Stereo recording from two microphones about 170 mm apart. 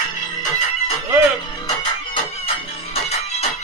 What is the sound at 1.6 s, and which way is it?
Music, 30° left (ahead or behind).